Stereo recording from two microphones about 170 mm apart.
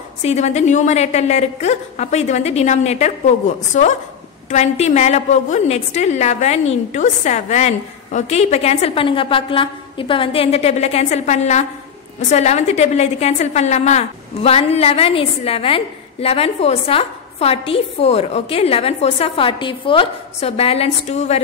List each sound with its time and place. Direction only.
0.2 s a woman's voice: 40° left (ahead or behind)